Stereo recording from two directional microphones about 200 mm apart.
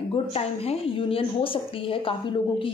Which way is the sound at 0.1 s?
30° left (ahead or behind).